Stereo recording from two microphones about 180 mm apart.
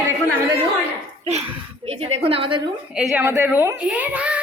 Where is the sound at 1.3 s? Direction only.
35° right (ahead or behind).